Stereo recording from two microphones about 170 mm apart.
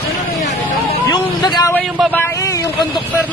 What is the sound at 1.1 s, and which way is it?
A man's voice, 25° left (ahead or behind).